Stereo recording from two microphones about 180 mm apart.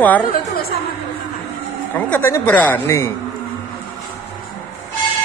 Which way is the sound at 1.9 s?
10° left (ahead or behind).